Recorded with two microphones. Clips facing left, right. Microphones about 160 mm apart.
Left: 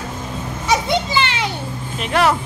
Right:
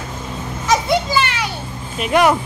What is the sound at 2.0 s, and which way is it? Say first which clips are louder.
Speech: right 3 dB; 15° right (ahead or behind).